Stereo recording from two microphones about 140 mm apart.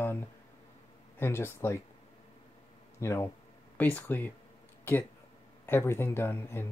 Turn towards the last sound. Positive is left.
turn(degrees=15)  # may be behind; listen again after turning